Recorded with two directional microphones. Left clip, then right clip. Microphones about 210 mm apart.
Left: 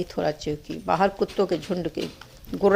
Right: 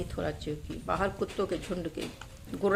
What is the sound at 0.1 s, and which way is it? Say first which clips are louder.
A man's voice: left 8 dB; 30° left (ahead or behind).